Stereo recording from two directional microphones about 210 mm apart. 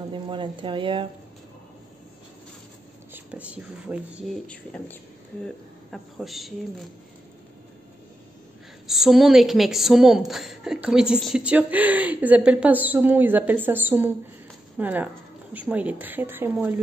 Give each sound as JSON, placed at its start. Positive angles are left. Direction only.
{"t": 0.1, "sound": "speech", "side_deg": -25}
{"t": 3.1, "sound": "speech", "side_deg": -5}
{"t": 4.5, "sound": "a woman's voice", "side_deg": 5}
{"t": 8.8, "sound": "a woman's voice", "side_deg": 0}